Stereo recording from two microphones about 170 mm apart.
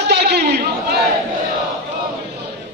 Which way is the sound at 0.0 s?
75° right (ahead or behind).